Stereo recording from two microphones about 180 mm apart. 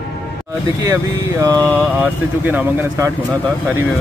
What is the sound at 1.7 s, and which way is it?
Speech, 5° left (ahead or behind).